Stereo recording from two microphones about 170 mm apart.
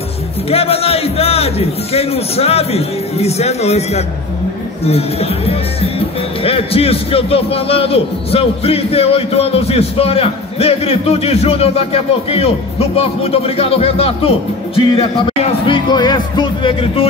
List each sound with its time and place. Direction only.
0.5 s speech: 35° left (ahead or behind)